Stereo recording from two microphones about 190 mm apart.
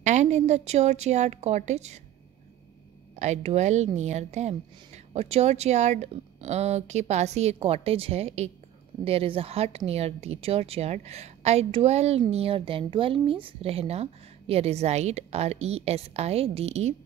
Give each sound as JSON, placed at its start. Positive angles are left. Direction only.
{"t": 0.0, "sound": "a woman's voice", "side_deg": -40}
{"t": 3.2, "sound": "a woman's voice", "side_deg": -35}